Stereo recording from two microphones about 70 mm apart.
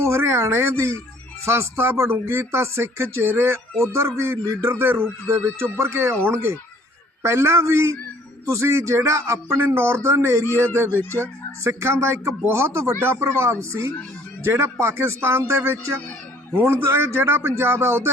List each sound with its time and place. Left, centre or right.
0.0 s speech: right